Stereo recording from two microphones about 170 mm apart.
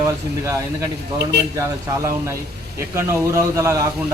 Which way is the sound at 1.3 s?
75° right (ahead or behind).